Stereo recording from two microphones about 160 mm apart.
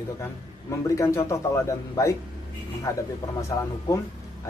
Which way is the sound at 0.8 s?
20° left (ahead or behind).